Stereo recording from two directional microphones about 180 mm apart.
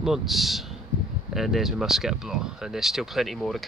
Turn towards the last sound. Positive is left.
turn(degrees=0)  # may be behind; listen again after turning